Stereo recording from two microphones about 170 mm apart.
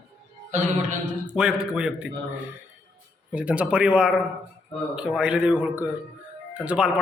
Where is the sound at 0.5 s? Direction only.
45° right (ahead or behind).